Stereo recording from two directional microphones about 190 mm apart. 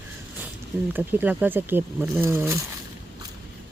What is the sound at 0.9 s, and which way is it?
Speech, 10° right (ahead or behind).